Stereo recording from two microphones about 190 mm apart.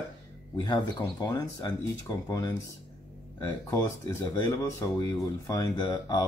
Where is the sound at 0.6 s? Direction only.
20° left (ahead or behind).